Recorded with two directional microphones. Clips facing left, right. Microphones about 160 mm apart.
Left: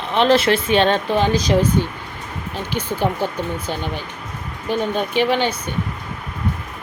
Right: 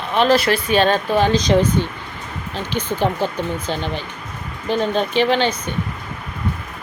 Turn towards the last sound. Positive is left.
turn(degrees=10)  # may be behind; listen again after turning